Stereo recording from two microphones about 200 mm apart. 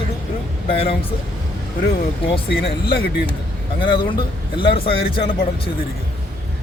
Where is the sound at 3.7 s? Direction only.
25° left (ahead or behind).